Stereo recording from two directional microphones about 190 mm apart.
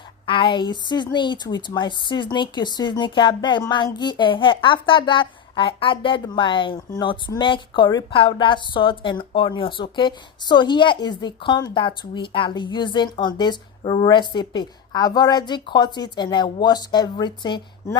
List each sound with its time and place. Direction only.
0.5 s speech: 25° left (ahead or behind)